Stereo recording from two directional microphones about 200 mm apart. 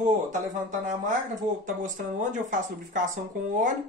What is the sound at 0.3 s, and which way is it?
Speech, 40° right (ahead or behind).